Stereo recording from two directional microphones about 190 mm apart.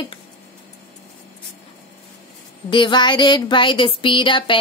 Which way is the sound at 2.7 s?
25° left (ahead or behind).